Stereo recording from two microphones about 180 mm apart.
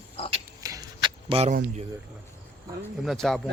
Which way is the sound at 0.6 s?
20° right (ahead or behind).